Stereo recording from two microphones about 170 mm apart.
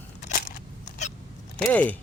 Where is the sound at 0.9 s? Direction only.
45° left (ahead or behind).